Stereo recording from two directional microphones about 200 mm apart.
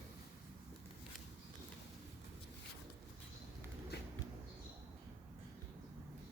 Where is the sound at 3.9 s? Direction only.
55° left (ahead or behind).